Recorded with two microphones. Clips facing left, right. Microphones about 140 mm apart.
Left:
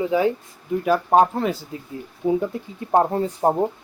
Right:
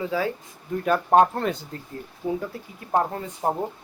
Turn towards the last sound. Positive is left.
turn(degrees=30)  # may be behind; listen again after turning